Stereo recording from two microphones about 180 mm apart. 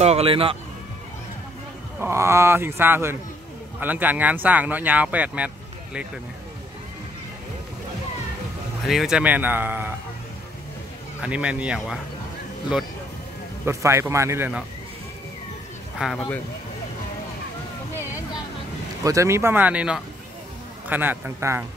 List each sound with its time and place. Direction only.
0.0 s speech: 35° right (ahead or behind)
2.0 s speech: 15° right (ahead or behind)
8.8 s speech: centre (ahead or behind)
11.2 s speech: 5° right (ahead or behind)
13.7 s speech: 15° right (ahead or behind)
16.0 s speech: centre (ahead or behind)
19.0 s speech: 15° right (ahead or behind)